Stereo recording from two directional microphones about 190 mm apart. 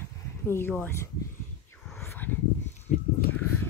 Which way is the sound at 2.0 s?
15° left (ahead or behind).